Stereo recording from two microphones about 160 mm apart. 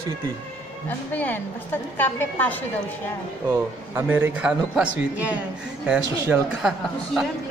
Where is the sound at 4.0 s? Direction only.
10° right (ahead or behind).